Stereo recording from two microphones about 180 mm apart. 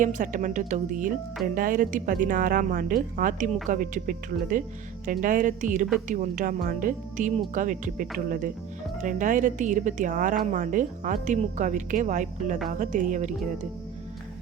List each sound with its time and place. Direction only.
0.0 s a woman's voice: 45° right (ahead or behind)